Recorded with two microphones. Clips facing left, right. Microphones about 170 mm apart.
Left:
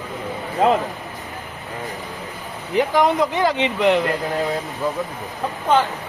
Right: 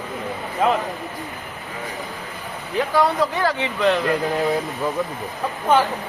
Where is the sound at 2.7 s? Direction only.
20° left (ahead or behind).